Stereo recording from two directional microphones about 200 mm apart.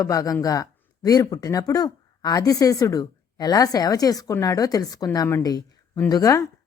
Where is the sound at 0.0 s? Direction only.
15° left (ahead or behind).